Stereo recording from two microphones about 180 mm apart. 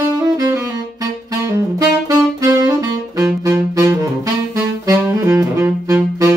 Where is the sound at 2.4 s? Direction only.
20° right (ahead or behind).